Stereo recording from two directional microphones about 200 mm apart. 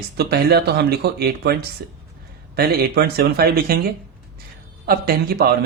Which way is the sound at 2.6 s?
50° right (ahead or behind).